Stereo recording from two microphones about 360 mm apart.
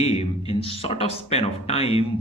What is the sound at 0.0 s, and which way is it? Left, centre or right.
Speech, centre.